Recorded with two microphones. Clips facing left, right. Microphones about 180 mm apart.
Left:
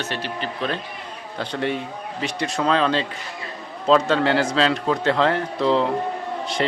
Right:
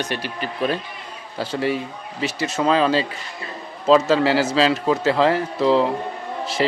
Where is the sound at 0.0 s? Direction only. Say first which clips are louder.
Right 1 dB; 15° right (ahead or behind).